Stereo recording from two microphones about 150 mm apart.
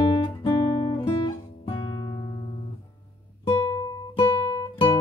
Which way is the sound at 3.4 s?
35° left (ahead or behind).